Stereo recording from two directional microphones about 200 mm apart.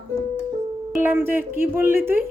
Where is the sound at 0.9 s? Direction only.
10° right (ahead or behind).